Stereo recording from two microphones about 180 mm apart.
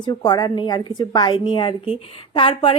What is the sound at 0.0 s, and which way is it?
A woman's voice, 25° left (ahead or behind).